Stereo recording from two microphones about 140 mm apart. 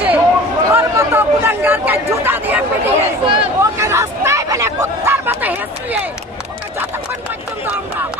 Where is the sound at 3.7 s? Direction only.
20° right (ahead or behind).